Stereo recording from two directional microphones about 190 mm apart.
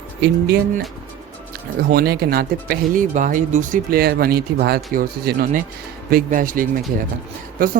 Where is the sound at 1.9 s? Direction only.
55° right (ahead or behind).